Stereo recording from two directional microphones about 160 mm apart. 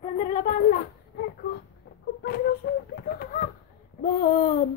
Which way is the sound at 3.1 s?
65° left (ahead or behind).